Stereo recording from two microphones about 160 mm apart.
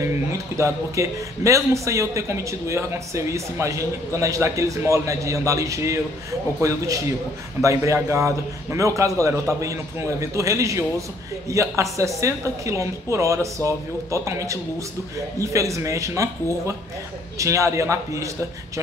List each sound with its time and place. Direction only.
0.3 s a man's voice: 20° right (ahead or behind)